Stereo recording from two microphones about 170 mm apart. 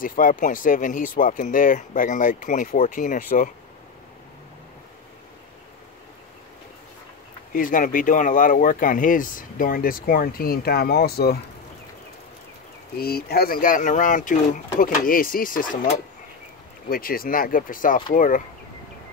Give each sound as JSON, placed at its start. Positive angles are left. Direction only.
{"t": 0.0, "sound": "speech", "side_deg": 55}
{"t": 7.5, "sound": "speech", "side_deg": 55}
{"t": 12.9, "sound": "speech", "side_deg": 65}